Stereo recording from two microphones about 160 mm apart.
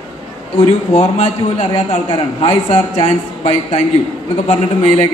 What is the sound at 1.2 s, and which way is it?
A man's voice, 35° left (ahead or behind).